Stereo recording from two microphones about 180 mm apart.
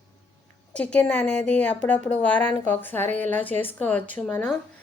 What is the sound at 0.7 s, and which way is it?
A woman's voice, 5° left (ahead or behind).